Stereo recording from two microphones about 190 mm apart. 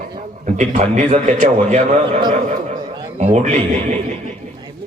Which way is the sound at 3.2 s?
35° right (ahead or behind).